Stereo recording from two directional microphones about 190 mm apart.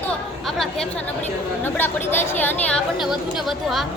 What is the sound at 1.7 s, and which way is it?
A woman's voice, 10° left (ahead or behind).